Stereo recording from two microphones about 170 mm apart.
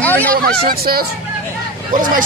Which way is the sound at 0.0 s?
10° left (ahead or behind).